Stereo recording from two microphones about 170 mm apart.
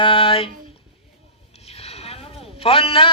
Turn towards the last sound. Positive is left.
turn(degrees=30)  # may be behind; listen again after turning